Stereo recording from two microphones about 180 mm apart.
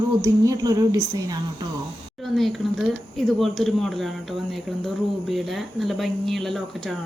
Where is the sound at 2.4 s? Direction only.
Centre (ahead or behind).